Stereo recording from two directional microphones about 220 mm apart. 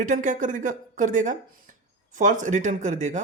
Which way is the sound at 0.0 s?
35° right (ahead or behind).